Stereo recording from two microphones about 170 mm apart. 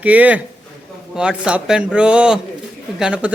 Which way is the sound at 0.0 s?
10° right (ahead or behind).